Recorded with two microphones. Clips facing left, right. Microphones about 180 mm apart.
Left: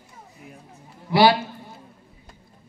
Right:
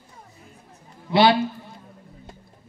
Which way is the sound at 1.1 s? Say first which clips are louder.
Even; 25° right (ahead or behind).